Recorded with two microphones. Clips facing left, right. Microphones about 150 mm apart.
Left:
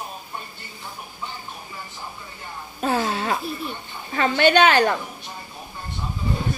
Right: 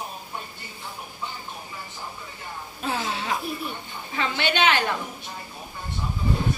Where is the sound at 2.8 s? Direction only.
45° left (ahead or behind).